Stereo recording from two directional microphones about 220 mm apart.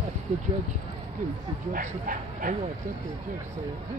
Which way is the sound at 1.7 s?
40° right (ahead or behind).